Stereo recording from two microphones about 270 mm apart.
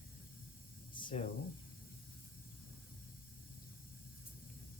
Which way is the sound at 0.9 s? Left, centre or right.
Centre.